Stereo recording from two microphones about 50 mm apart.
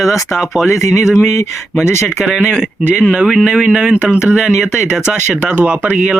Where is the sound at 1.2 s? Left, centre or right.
Left.